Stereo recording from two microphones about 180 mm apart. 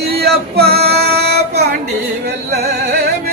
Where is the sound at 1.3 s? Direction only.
65° right (ahead or behind).